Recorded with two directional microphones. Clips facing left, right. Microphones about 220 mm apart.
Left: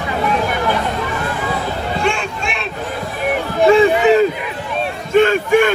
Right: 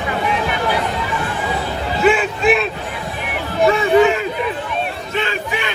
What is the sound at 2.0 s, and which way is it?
Music, 5° right (ahead or behind).